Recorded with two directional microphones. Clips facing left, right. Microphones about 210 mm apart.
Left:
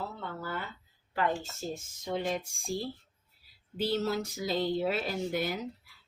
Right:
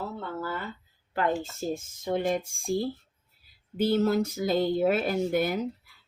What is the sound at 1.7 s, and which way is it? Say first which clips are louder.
Speech: right 6 dB; 50° right (ahead or behind).